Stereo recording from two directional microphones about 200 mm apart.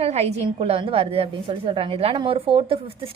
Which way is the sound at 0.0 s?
30° right (ahead or behind).